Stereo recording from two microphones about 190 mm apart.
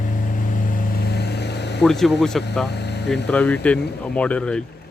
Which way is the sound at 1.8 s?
Centre (ahead or behind).